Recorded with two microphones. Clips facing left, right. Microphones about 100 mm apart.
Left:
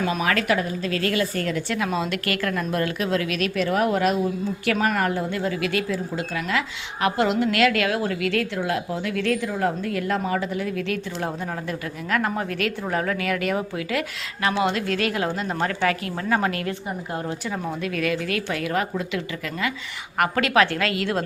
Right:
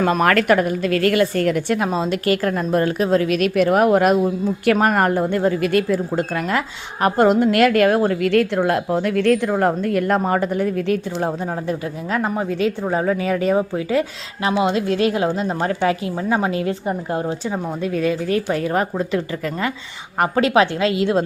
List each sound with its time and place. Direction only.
0.0 s a woman's voice: 50° right (ahead or behind)
1.9 s a woman's voice: 35° right (ahead or behind)
8.3 s a woman's voice: 55° right (ahead or behind)
11.2 s a woman's voice: 30° right (ahead or behind)